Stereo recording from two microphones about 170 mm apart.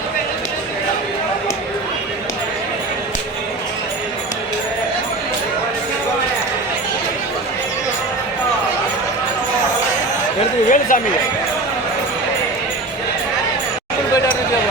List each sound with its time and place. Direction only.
10.7 s speech: 50° left (ahead or behind)